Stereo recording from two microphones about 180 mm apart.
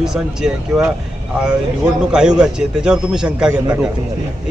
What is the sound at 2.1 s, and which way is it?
A man's voice, 5° right (ahead or behind).